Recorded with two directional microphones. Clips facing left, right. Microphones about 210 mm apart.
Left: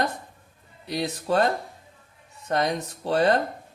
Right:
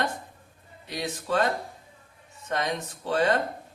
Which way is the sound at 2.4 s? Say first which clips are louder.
Left 4 dB; 40° left (ahead or behind).